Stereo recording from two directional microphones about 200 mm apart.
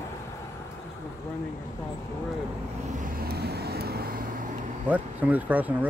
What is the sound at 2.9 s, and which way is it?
Vehicle, 45° right (ahead or behind).